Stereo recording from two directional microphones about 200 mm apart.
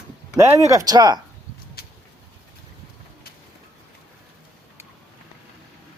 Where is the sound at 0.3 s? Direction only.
15° right (ahead or behind).